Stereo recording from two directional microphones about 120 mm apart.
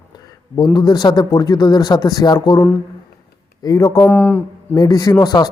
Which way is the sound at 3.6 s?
30° left (ahead or behind).